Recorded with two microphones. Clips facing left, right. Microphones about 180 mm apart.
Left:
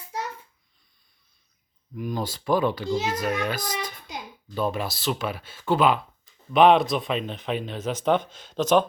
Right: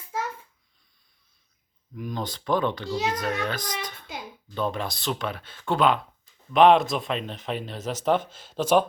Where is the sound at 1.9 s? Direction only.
5° left (ahead or behind).